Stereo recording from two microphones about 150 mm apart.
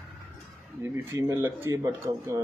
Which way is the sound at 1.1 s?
20° right (ahead or behind).